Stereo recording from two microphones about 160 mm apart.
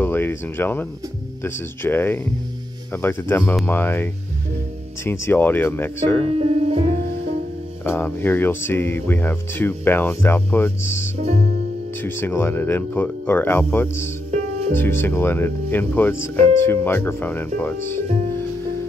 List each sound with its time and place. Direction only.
0.0 s speech: 15° left (ahead or behind)
6.3 s music: 40° right (ahead or behind)
7.8 s speech: 15° left (ahead or behind)
11.1 s music: 45° right (ahead or behind)
12.0 s speech: 15° left (ahead or behind)